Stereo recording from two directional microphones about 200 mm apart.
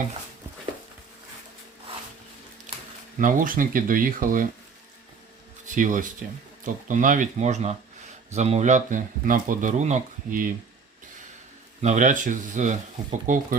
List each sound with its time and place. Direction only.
3.2 s speech: 40° right (ahead or behind)
5.6 s speech: 40° right (ahead or behind)
11.8 s speech: 35° right (ahead or behind)